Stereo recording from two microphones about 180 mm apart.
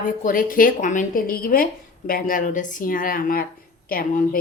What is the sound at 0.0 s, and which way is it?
Speech, 50° left (ahead or behind).